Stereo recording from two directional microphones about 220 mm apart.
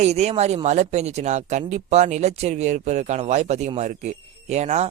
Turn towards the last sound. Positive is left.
turn(degrees=-30)  # may be behind; listen again after turning